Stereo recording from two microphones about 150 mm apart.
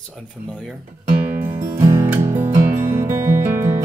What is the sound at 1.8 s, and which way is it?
Music, 20° right (ahead or behind).